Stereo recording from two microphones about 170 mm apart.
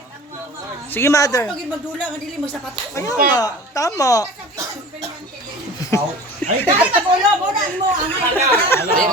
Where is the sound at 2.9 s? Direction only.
20° left (ahead or behind).